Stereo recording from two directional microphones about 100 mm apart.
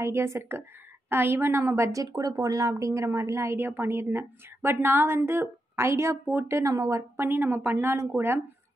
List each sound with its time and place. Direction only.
0.0 s a woman's voice: 25° right (ahead or behind)
7.0 s a woman's voice: 20° right (ahead or behind)